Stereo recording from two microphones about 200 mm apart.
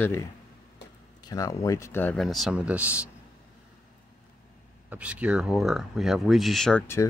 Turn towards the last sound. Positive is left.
turn(degrees=10)  # may be behind; listen again after turning